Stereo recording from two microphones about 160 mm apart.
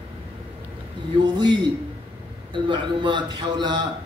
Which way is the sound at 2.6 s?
30° right (ahead or behind).